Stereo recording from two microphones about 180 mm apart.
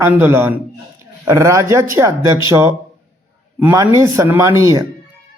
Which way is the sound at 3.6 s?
15° right (ahead or behind).